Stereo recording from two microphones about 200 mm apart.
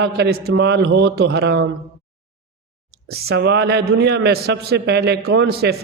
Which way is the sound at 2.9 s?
50° right (ahead or behind).